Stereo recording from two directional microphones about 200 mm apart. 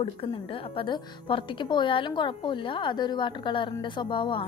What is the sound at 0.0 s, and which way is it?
A woman's voice, 25° left (ahead or behind).